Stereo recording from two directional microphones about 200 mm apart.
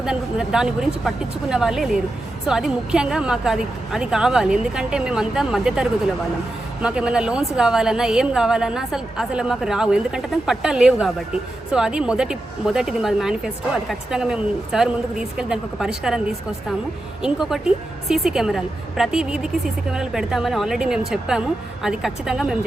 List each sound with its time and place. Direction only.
0.0 s speech: 5° right (ahead or behind)